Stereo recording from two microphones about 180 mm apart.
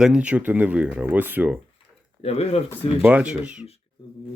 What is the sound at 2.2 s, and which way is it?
Speech, 35° left (ahead or behind).